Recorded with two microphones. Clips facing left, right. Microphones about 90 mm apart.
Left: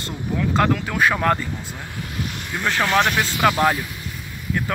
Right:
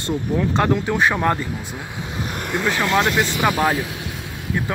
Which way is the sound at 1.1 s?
5° right (ahead or behind).